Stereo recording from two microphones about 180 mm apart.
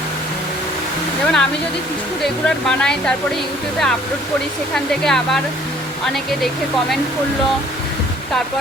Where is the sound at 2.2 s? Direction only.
5° left (ahead or behind).